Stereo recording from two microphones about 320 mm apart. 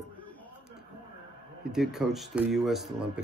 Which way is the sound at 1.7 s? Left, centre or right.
Centre.